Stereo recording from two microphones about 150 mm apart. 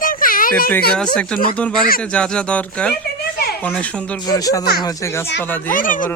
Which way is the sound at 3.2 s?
90° left.